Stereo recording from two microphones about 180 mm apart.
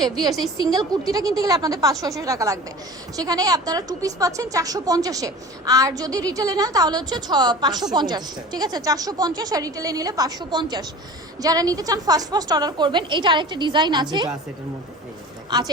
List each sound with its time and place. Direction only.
0.0 s a woman's voice: 20° right (ahead or behind)
15.4 s speech: 20° right (ahead or behind)